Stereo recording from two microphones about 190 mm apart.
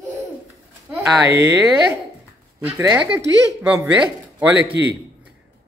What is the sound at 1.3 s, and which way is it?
Speech, 15° right (ahead or behind).